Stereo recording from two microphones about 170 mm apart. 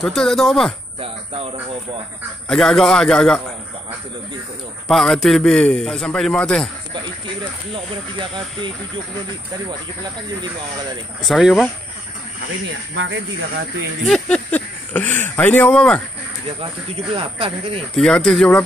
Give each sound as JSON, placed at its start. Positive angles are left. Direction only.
{"t": 0.0, "sound": "a man's voice", "side_deg": 5}
{"t": 2.4, "sound": "a man's voice", "side_deg": 5}
{"t": 4.8, "sound": "a man's voice", "side_deg": 0}
{"t": 7.7, "sound": "speech", "side_deg": -30}
{"t": 11.2, "sound": "a man's voice", "side_deg": 0}
{"t": 12.9, "sound": "speech", "side_deg": -90}
{"t": 14.0, "sound": "speech", "side_deg": 5}
{"t": 17.1, "sound": "speech", "side_deg": -35}
{"t": 17.9, "sound": "a man's voice", "side_deg": 5}